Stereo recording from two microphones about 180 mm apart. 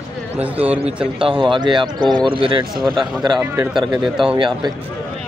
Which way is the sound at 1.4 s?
25° right (ahead or behind).